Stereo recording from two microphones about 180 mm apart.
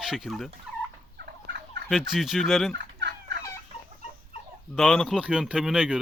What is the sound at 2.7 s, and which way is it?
Fowl, 75° right (ahead or behind).